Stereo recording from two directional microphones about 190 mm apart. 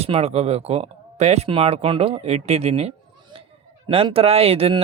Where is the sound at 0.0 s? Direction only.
35° right (ahead or behind).